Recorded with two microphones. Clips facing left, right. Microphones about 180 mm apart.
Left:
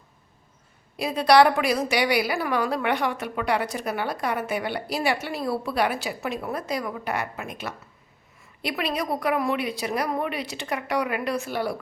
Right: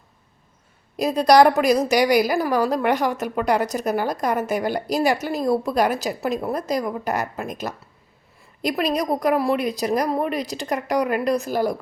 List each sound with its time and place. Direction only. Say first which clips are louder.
0.9 s a woman's voice: right 3 dB; 40° right (ahead or behind)